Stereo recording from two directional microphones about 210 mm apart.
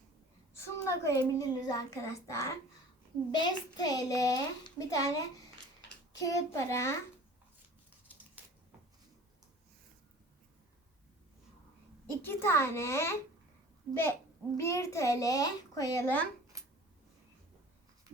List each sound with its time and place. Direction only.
0.5 s a child's voice: 15° left (ahead or behind)
6.1 s a child's voice: 15° left (ahead or behind)
8.2 s a sound: 5° right (ahead or behind)
12.2 s a child's voice: 10° left (ahead or behind)